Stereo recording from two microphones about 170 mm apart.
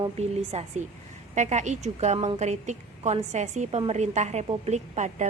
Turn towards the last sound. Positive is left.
turn(degrees=-45)  # may be behind; listen again after turning